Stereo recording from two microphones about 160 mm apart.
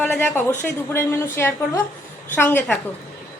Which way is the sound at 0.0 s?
10° left (ahead or behind).